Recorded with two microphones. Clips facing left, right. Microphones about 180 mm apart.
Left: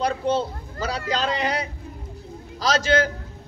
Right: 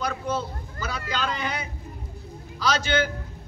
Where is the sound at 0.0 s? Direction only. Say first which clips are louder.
Left 6 dB; 30° left (ahead or behind).